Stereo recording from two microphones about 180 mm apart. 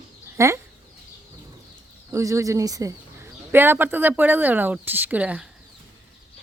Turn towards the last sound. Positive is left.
turn(degrees=-5)  # may be behind; listen again after turning